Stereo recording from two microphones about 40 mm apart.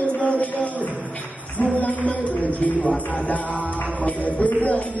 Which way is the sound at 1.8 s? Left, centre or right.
Left.